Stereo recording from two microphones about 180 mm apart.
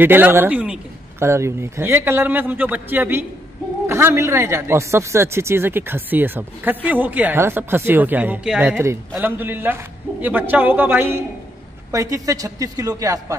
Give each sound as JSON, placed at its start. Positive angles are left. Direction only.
{"t": 0.0, "sound": "speech", "side_deg": -10}